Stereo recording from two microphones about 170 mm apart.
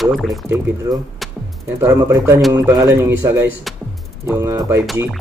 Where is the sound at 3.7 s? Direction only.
Centre (ahead or behind).